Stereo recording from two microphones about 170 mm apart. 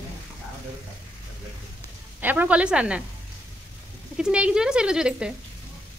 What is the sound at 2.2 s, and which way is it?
Speech, 10° right (ahead or behind).